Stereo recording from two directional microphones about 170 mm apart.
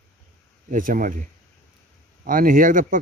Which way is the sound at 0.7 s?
55° right (ahead or behind).